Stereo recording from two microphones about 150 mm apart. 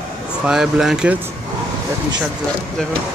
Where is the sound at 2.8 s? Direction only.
5° left (ahead or behind).